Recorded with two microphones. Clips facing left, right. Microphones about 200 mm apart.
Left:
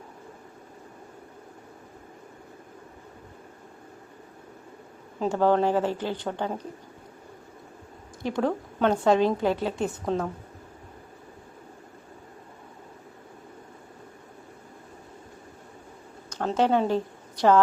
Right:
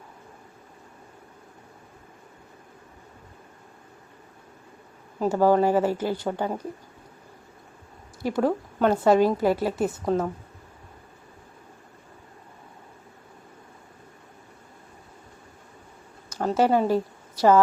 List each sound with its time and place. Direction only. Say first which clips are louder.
5.2 s speech: right 2 dB; 10° right (ahead or behind)
8.2 s a woman's voice: right 3 dB; 5° right (ahead or behind)
16.3 s a woman's voice: right 2 dB; 5° right (ahead or behind)